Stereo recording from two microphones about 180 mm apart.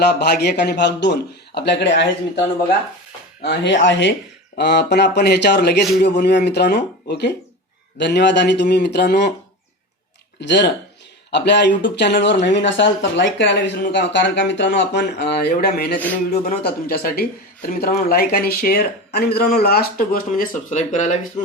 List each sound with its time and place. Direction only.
0.0 s speech: 65° left (ahead or behind)
3.4 s speech: 70° left (ahead or behind); by 4.1 s 90° left
4.5 s speech: 70° left (ahead or behind)
10.4 s speech: 75° left (ahead or behind); by 21.2 s 40° left (ahead or behind)